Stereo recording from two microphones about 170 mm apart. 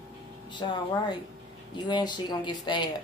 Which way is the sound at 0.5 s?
25° left (ahead or behind).